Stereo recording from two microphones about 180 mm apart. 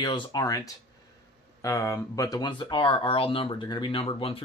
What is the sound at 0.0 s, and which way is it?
Speech, 25° left (ahead or behind).